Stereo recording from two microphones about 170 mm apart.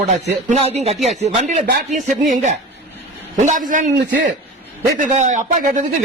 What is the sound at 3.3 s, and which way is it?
Speech, 50° right (ahead or behind).